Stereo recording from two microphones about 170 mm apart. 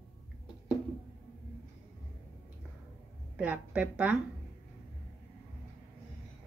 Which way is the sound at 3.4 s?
10° right (ahead or behind).